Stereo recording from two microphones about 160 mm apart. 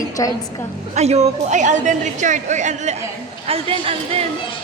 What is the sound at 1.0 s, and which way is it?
A woman's voice, 45° right (ahead or behind).